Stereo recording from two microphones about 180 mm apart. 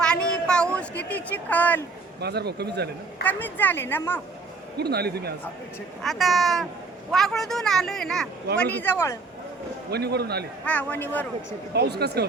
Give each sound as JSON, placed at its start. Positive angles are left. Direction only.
{"t": 0.0, "sound": "a sound", "side_deg": 5}
{"t": 2.2, "sound": "speech", "side_deg": -65}
{"t": 3.2, "sound": "a woman's voice", "side_deg": 10}
{"t": 4.8, "sound": "speech", "side_deg": -60}
{"t": 6.0, "sound": "a woman's voice", "side_deg": 0}
{"t": 9.9, "sound": "speech", "side_deg": -65}
{"t": 10.7, "sound": "a woman's voice", "side_deg": 10}
{"t": 11.7, "sound": "speech", "side_deg": -65}